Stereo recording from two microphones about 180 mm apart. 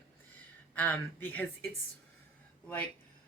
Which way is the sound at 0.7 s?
10° left (ahead or behind).